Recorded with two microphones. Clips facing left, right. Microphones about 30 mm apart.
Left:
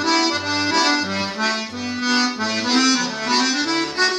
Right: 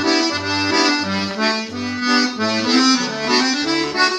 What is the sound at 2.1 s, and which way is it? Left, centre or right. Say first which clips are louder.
Music: right 3 dB; right.